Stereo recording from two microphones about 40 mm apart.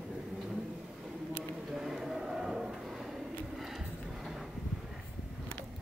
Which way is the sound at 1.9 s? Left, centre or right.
Centre.